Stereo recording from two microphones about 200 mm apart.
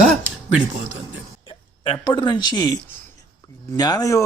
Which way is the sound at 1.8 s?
20° left (ahead or behind).